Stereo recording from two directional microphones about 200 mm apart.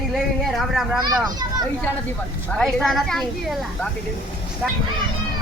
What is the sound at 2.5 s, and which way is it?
Speech, centre (ahead or behind).